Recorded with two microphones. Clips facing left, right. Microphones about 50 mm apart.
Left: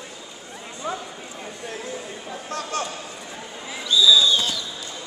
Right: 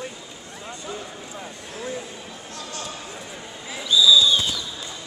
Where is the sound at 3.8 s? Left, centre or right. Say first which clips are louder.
Even; centre.